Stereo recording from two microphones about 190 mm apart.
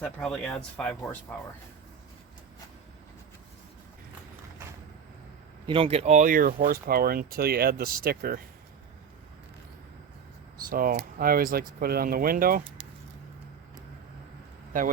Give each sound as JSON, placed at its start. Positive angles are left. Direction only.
{"t": 0.0, "sound": "speech", "side_deg": 5}
{"t": 5.6, "sound": "speech", "side_deg": -30}
{"t": 10.7, "sound": "speech", "side_deg": -50}